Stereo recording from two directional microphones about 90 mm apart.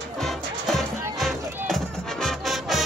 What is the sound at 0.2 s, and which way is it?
Music, 5° left (ahead or behind).